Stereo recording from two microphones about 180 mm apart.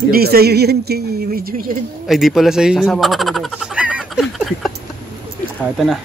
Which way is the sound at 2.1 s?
Centre (ahead or behind).